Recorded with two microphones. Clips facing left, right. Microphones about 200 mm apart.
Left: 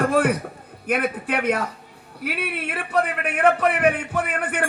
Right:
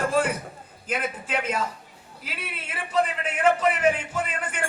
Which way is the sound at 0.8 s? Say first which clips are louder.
Left 6 dB; 60° left (ahead or behind).